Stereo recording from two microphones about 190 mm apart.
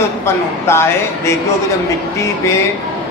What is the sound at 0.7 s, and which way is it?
Speech, 15° left (ahead or behind).